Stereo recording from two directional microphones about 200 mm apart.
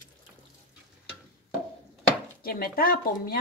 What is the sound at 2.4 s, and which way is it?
A woman's voice, 50° left (ahead or behind).